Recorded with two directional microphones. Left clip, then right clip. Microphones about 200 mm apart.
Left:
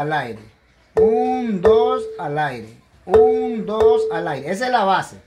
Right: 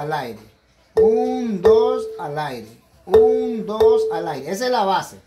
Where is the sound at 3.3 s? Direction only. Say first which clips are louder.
Even; 30° left (ahead or behind).